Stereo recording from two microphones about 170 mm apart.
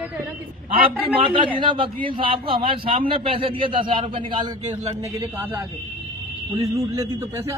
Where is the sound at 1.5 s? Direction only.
30° right (ahead or behind).